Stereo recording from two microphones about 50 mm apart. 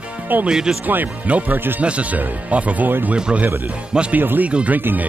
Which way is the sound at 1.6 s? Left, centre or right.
Right.